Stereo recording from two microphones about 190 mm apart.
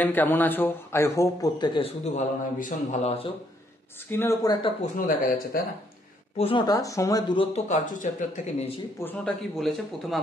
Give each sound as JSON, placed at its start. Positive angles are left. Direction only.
{"t": 0.0, "sound": "a man's voice", "side_deg": 10}
{"t": 4.1, "sound": "a man's voice", "side_deg": 15}
{"t": 4.9, "sound": "speech", "side_deg": 45}
{"t": 6.3, "sound": "speech", "side_deg": 30}
{"t": 7.5, "sound": "speech", "side_deg": 40}
{"t": 9.0, "sound": "speech", "side_deg": 5}